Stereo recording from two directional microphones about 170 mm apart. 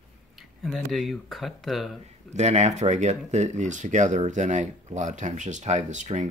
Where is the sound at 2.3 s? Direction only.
40° right (ahead or behind).